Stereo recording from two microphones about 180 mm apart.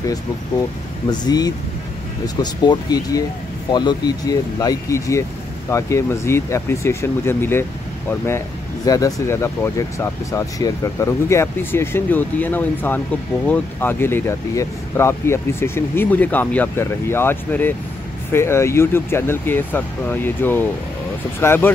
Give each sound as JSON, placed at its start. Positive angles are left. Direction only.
{"t": 1.0, "sound": "speech", "side_deg": 20}
{"t": 8.8, "sound": "speech", "side_deg": 20}